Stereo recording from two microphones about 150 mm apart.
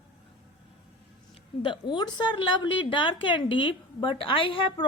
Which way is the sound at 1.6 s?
30° left (ahead or behind).